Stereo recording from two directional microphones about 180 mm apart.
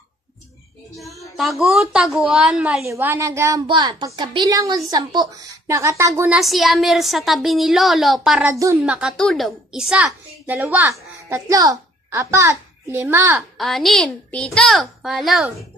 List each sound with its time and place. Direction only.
0.9 s a child's voice: centre (ahead or behind)
8.5 s speech: 15° right (ahead or behind)
8.8 s a child's voice: 5° right (ahead or behind)
13.4 s a child's voice: centre (ahead or behind)